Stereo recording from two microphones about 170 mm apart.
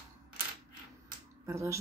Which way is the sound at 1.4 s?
15° right (ahead or behind).